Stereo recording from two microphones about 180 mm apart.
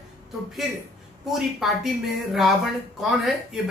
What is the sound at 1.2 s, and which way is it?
Speech, centre (ahead or behind).